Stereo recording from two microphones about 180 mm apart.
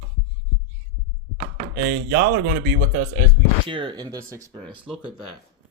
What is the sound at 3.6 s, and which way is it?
Speech, 25° right (ahead or behind).